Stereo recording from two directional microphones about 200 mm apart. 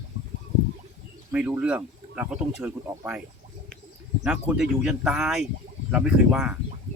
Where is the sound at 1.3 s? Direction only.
5° right (ahead or behind).